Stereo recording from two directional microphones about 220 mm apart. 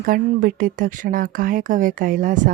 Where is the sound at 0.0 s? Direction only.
40° right (ahead or behind).